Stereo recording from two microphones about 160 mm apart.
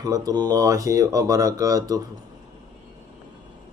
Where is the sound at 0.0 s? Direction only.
20° right (ahead or behind).